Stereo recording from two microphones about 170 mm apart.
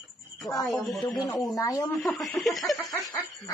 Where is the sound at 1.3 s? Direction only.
20° left (ahead or behind).